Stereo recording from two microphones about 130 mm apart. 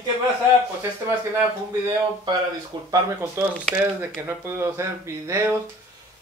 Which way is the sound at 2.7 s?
35° right (ahead or behind).